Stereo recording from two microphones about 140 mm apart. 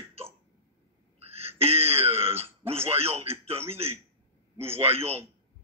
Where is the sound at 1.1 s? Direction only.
45° right (ahead or behind).